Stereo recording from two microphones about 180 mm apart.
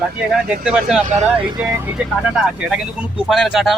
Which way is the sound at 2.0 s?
5° right (ahead or behind).